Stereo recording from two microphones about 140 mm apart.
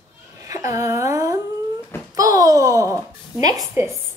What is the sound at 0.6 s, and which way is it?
Speech, 20° right (ahead or behind).